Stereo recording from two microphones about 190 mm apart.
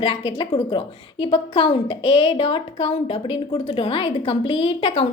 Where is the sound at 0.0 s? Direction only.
25° left (ahead or behind).